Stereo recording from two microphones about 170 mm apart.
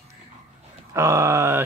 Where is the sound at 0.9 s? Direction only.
20° right (ahead or behind).